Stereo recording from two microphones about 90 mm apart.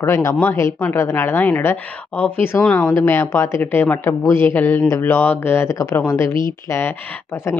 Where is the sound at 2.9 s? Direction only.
25° left (ahead or behind).